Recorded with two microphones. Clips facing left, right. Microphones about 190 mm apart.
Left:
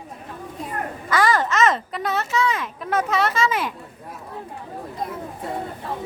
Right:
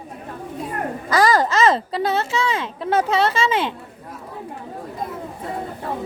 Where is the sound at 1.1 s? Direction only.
35° right (ahead or behind).